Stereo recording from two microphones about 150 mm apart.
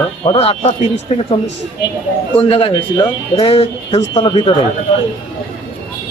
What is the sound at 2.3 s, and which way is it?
A man's voice, 35° left (ahead or behind).